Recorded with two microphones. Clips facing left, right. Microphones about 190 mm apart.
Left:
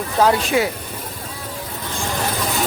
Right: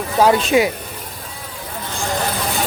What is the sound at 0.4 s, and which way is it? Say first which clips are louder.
Speech: right 3 dB; 20° right (ahead or behind).